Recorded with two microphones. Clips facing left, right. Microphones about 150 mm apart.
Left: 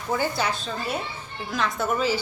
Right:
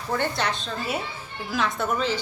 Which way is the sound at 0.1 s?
5° left (ahead or behind).